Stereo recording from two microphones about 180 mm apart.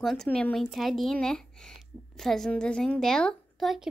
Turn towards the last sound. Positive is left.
turn(degrees=0)  # may be behind; listen again after turning